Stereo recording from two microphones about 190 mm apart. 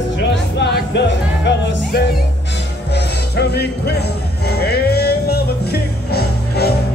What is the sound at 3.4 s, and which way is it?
Music, 60° left (ahead or behind).